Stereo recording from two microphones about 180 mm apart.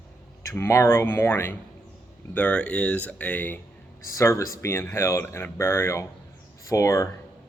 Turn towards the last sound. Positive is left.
turn(degrees=15)  # may be behind; listen again after turning